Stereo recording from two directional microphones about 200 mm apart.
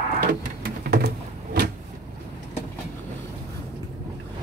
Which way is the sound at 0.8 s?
50° right (ahead or behind).